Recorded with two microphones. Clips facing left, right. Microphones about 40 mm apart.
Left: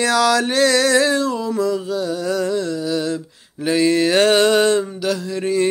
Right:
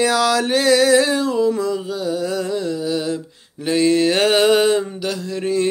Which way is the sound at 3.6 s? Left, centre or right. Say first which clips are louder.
Even; centre.